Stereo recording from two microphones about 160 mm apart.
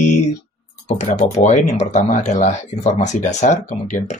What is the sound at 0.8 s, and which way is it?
Speech, 45° left (ahead or behind).